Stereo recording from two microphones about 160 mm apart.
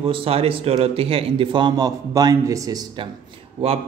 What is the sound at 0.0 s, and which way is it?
A man's voice, 35° right (ahead or behind).